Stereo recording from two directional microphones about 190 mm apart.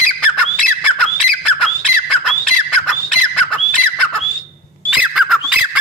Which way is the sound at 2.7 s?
5° left (ahead or behind).